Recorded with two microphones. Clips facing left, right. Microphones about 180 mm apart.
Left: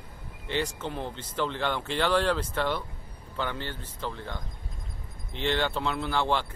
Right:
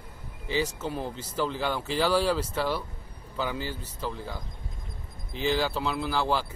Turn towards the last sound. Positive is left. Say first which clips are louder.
# even
turn(degrees=-5)  # may be behind; listen again after turning